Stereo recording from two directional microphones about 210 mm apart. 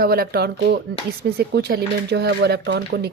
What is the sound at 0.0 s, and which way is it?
A woman's voice, 45° right (ahead or behind).